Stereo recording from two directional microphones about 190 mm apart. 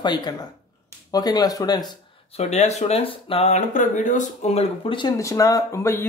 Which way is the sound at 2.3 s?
35° left (ahead or behind).